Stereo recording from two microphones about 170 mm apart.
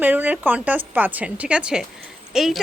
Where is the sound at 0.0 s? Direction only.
10° right (ahead or behind).